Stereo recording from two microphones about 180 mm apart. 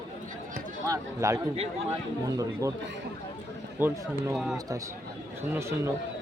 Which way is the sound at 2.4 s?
15° right (ahead or behind).